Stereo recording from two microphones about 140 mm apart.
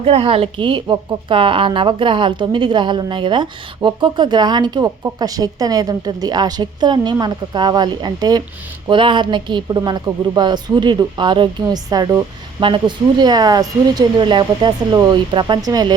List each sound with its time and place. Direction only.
0.0 s speech: 40° right (ahead or behind)